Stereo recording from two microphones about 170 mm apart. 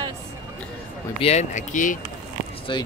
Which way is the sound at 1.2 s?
40° left (ahead or behind).